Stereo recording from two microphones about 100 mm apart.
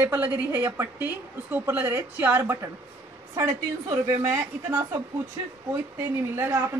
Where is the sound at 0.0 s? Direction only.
20° right (ahead or behind).